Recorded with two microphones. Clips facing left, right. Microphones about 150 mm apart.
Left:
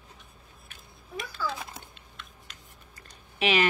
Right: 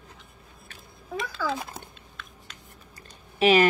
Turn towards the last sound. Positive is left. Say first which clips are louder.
# right 6 dB
turn(degrees=-40)  # may be behind; listen again after turning